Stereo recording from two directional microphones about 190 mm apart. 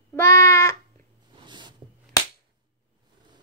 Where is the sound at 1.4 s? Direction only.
25° right (ahead or behind).